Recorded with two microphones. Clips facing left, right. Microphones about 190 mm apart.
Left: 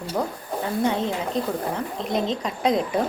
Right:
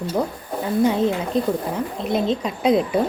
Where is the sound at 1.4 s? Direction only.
10° right (ahead or behind).